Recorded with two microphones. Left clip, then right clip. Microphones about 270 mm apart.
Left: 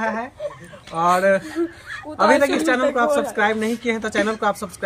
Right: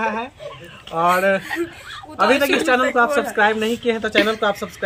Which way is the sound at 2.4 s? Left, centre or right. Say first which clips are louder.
Right 1 dB; centre.